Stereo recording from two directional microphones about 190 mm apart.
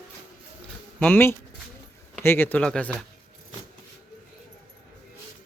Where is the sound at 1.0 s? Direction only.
10° left (ahead or behind).